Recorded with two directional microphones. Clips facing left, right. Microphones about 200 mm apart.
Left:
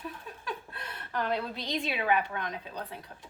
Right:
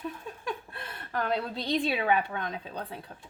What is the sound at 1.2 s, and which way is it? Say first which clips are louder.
A woman's voice: right 4 dB; 30° right (ahead or behind).